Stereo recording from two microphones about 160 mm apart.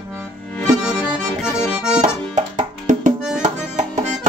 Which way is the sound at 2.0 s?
50° right (ahead or behind).